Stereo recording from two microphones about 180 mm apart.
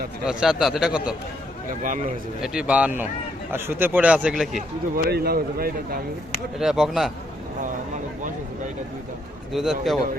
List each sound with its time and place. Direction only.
0.3 s a man's voice: 5° right (ahead or behind)
1.8 s speech: 45° right (ahead or behind)
2.4 s speech: 5° right (ahead or behind)
5.0 s speech: 60° right (ahead or behind)
6.6 s a man's voice: 5° right (ahead or behind)
9.5 s a man's voice: centre (ahead or behind)